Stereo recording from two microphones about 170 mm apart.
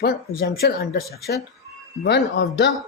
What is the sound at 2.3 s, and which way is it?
Speech, 80° left.